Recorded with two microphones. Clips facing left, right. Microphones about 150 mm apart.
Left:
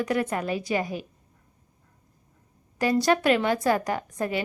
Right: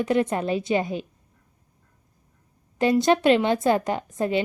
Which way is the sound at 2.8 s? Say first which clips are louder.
Right 3 dB; 25° right (ahead or behind).